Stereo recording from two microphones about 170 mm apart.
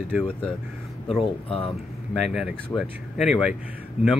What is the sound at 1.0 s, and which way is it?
Speech, 35° left (ahead or behind).